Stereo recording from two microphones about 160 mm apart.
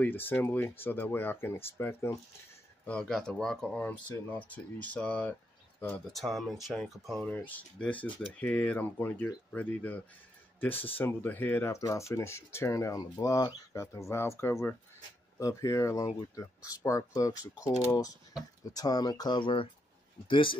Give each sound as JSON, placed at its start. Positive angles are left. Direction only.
{"t": 0.0, "sound": "speech", "side_deg": 10}